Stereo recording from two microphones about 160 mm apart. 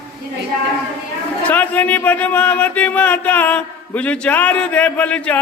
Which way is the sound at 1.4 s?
10° left (ahead or behind).